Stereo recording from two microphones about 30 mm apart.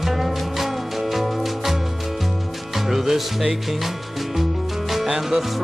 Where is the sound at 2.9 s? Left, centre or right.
Centre.